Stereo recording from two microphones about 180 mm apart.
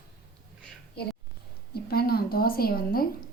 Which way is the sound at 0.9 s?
60° left (ahead or behind).